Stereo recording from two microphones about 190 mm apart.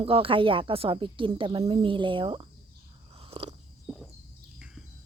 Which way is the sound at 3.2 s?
30° right (ahead or behind).